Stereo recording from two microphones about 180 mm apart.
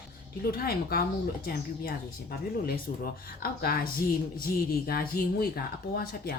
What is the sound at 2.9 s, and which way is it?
Speech, 50° left (ahead or behind).